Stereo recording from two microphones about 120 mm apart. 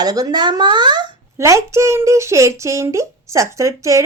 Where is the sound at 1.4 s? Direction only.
25° right (ahead or behind).